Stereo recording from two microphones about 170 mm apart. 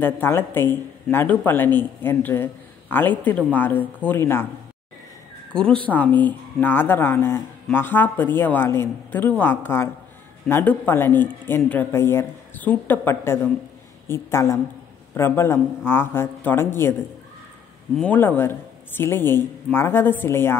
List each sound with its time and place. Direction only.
0.0 s speech: 15° left (ahead or behind)
5.5 s speech: 5° left (ahead or behind)
17.9 s speech: 10° left (ahead or behind)